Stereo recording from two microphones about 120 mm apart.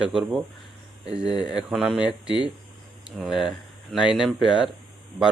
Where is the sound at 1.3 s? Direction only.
35° left (ahead or behind).